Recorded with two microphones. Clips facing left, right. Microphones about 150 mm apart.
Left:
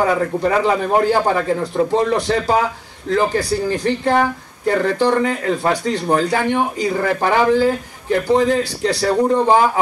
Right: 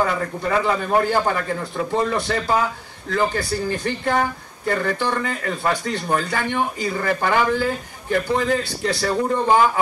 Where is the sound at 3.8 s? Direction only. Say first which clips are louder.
Left 6 dB; 35° left (ahead or behind).